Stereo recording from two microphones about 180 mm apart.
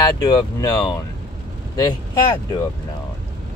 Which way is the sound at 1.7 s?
20° left (ahead or behind).